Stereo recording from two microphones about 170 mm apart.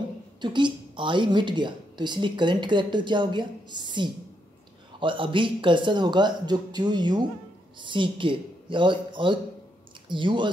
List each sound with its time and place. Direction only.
0.4 s a woman's voice: 25° right (ahead or behind)